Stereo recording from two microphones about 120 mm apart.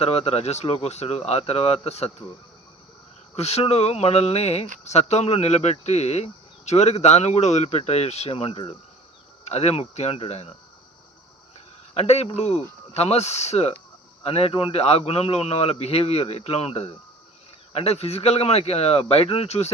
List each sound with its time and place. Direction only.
0.0 s speech: 60° left (ahead or behind)
3.3 s speech: 65° left (ahead or behind)
11.9 s speech: 60° left (ahead or behind)